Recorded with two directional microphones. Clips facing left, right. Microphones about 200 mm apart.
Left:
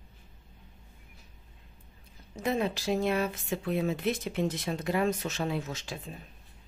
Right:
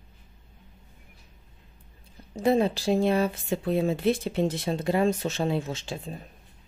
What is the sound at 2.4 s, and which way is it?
Speech, 30° right (ahead or behind).